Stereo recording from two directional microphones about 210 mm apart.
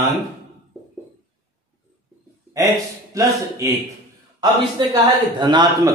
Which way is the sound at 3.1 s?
15° right (ahead or behind).